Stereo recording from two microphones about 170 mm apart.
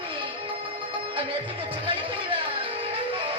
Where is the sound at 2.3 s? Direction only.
30° right (ahead or behind).